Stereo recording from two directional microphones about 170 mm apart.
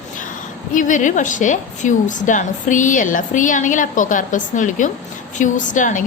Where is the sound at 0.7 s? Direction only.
50° left (ahead or behind).